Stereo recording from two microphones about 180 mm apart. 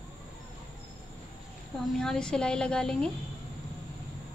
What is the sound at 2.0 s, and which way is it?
A woman's voice, 5° left (ahead or behind).